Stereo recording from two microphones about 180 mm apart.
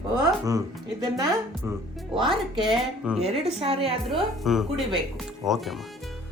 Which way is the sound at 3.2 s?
35° right (ahead or behind).